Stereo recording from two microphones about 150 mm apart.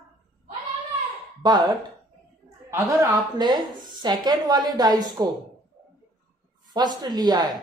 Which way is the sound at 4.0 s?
25° right (ahead or behind).